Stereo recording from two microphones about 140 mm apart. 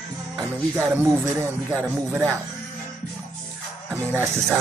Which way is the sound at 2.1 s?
15° right (ahead or behind).